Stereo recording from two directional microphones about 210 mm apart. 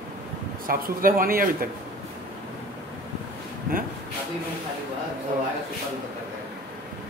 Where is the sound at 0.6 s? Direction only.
40° right (ahead or behind).